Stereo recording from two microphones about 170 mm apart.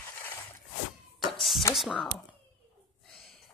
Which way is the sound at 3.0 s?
Centre (ahead or behind).